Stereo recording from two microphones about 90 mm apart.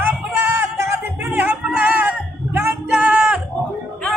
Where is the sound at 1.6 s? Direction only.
15° right (ahead or behind).